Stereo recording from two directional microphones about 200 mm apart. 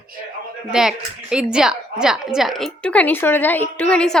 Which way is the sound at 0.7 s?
5° right (ahead or behind).